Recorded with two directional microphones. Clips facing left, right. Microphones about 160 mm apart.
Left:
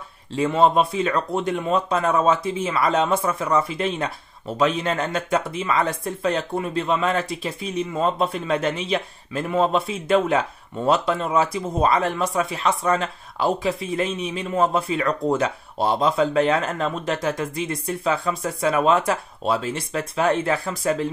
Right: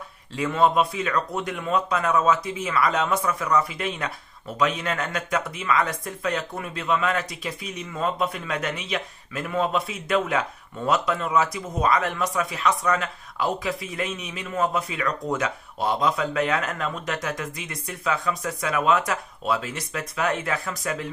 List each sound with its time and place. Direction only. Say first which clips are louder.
0.4 s speech: left 3 dB; 25° left (ahead or behind)